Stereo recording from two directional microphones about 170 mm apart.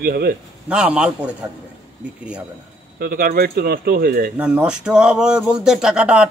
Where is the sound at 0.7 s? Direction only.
5° right (ahead or behind).